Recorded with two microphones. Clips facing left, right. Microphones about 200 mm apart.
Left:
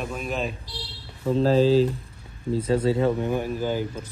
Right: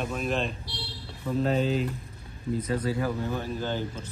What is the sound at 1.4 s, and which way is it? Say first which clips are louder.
Speech: left 8 dB; 30° left (ahead or behind).